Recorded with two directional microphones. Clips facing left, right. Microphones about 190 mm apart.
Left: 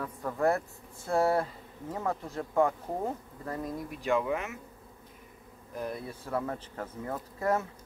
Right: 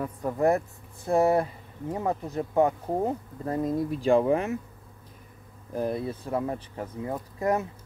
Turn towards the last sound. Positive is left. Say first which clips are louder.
# right 3 dB
turn(degrees=-20)  # may be behind; listen again after turning